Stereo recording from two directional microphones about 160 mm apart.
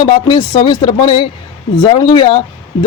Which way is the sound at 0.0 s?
30° left (ahead or behind).